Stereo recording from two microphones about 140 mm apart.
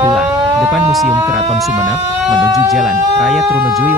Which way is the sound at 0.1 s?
Centre (ahead or behind).